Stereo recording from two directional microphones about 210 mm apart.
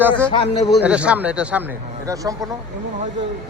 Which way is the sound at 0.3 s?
25° left (ahead or behind).